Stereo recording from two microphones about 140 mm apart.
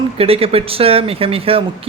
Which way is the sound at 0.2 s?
45° right (ahead or behind).